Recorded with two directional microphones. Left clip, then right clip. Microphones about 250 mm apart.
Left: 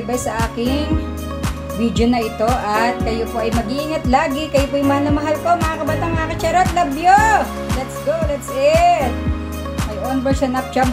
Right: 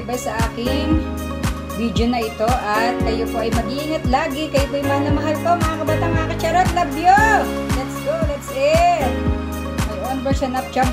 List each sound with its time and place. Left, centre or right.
0.1 s speech: centre
8.5 s speech: centre